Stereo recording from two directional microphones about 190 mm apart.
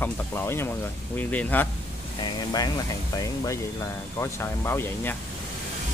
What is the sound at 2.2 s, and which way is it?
Speech, 20° left (ahead or behind).